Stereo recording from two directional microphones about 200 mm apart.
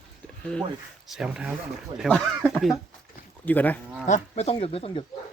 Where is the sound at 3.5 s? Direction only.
10° left (ahead or behind).